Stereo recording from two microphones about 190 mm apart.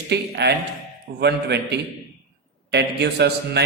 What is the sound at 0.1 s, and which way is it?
A man's voice, 60° right (ahead or behind).